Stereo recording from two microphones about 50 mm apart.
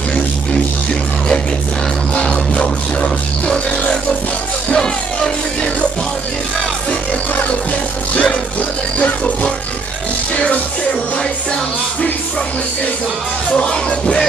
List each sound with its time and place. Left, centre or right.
2.1 s music: centre
8.2 s music: left
13.5 s music: left